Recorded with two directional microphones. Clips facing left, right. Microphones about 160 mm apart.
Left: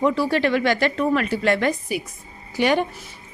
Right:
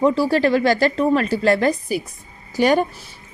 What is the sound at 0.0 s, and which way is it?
A woman's voice, 35° right (ahead or behind).